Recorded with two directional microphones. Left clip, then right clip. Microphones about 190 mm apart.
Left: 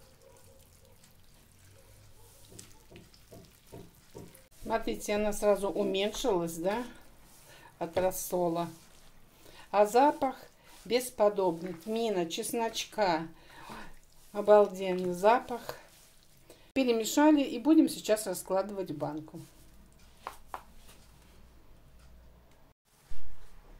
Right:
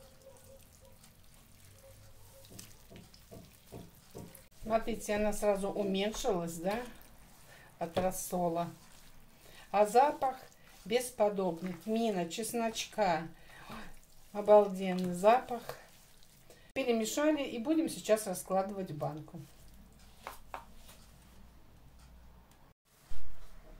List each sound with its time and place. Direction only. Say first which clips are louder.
4.6 s speech: left 1 dB; 45° left (ahead or behind)
7.8 s speech: left 3 dB; 45° left (ahead or behind)
9.7 s speech: left 2 dB; 45° left (ahead or behind)
16.7 s speech: left 4 dB; 40° left (ahead or behind)